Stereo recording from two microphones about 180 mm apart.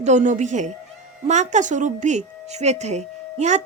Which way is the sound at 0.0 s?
40° right (ahead or behind).